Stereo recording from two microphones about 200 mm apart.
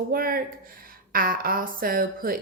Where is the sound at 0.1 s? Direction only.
45° right (ahead or behind).